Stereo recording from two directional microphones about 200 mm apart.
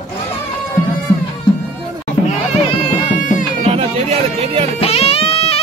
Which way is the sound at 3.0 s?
40° left (ahead or behind).